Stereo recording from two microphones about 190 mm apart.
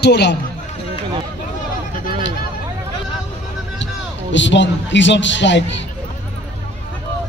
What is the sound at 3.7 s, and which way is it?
A man's voice, 70° left (ahead or behind).